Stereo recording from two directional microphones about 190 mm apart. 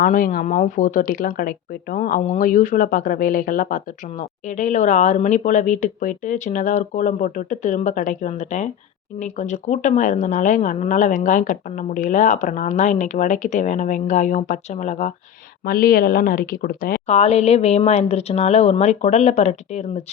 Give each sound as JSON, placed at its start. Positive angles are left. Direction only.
{"t": 0.0, "sound": "speech", "side_deg": 45}
{"t": 0.4, "sound": "speech", "side_deg": 35}
{"t": 15.6, "sound": "speech", "side_deg": 50}
{"t": 17.1, "sound": "speech", "side_deg": 35}